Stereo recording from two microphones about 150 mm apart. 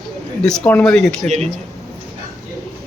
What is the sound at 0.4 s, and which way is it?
Speech, 5° left (ahead or behind).